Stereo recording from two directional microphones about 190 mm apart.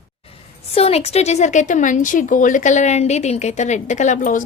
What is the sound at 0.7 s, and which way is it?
Speech, 30° left (ahead or behind).